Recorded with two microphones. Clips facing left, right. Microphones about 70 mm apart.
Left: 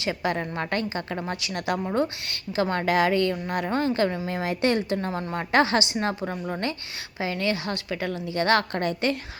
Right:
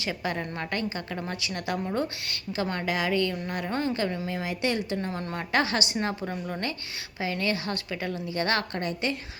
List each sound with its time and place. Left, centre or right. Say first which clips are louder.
0.0 s a woman's voice: left 4 dB; left